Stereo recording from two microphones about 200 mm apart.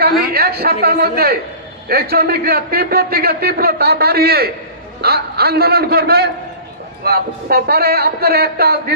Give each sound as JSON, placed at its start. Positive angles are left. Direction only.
{"t": 0.3, "sound": "a man's voice", "side_deg": -50}